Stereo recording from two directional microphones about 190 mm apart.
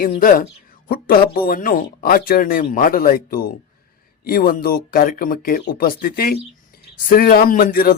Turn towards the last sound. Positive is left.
turn(degrees=50)  # may be behind; listen again after turning